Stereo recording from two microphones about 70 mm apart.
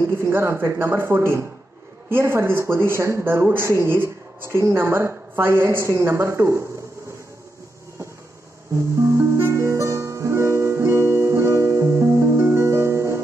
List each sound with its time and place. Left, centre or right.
0.2 s a man's voice: right
8.7 s music: right